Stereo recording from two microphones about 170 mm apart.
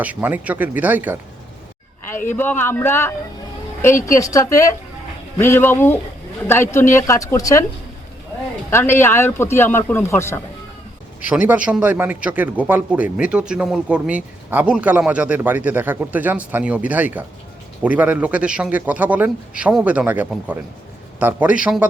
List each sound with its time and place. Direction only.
0.0 s a man's voice: 10° right (ahead or behind)
2.3 s speech: 10° left (ahead or behind)
8.7 s speech: 15° left (ahead or behind)
11.2 s a man's voice: 10° right (ahead or behind)